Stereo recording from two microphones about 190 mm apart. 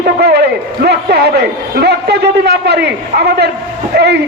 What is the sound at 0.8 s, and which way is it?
Speech, 60° right (ahead or behind).